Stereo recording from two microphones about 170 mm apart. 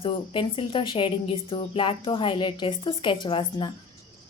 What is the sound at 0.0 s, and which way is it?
A woman's voice, 30° left (ahead or behind).